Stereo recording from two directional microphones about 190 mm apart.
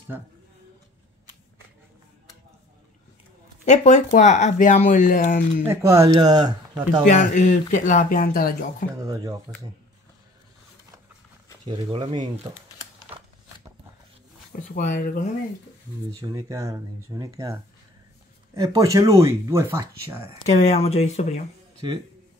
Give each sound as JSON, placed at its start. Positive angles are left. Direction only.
{"t": 3.6, "sound": "speech", "side_deg": 40}
{"t": 5.7, "sound": "speech", "side_deg": -15}
{"t": 7.1, "sound": "speech", "side_deg": 40}
{"t": 9.0, "sound": "speech", "side_deg": -20}
{"t": 11.6, "sound": "speech", "side_deg": -25}
{"t": 14.5, "sound": "speech", "side_deg": 45}
{"t": 16.1, "sound": "speech", "side_deg": -20}
{"t": 20.4, "sound": "speech", "side_deg": 35}
{"t": 21.8, "sound": "speech", "side_deg": -25}